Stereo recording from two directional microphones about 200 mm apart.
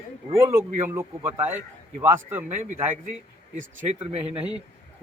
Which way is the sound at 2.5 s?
35° right (ahead or behind).